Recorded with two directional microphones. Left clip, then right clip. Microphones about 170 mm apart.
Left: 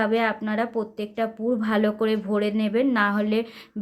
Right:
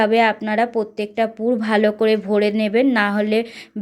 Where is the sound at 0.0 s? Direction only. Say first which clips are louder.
Right 7 dB; 20° right (ahead or behind).